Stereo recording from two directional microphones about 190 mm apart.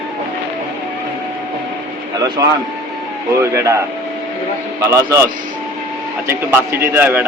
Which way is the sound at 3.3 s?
15° right (ahead or behind).